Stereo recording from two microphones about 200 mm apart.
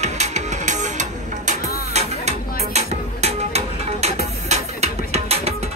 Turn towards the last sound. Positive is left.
turn(degrees=-30)  # may be behind; listen again after turning